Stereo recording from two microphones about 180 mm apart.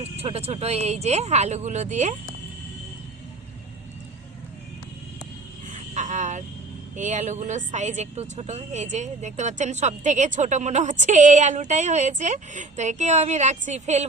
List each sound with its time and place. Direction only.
0.0 s speech: 35° right (ahead or behind)
5.7 s vehicle: 40° right (ahead or behind)
6.9 s speech: 45° right (ahead or behind)